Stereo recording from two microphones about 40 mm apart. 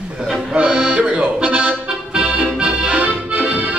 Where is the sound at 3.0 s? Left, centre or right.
Right.